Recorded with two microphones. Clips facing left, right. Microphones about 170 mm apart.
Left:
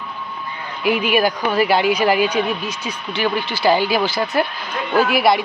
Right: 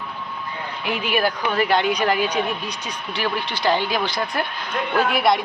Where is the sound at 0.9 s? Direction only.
15° left (ahead or behind).